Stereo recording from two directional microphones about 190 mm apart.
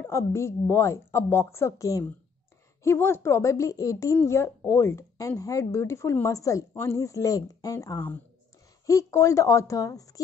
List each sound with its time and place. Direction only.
0.0 s a woman's voice: 15° left (ahead or behind)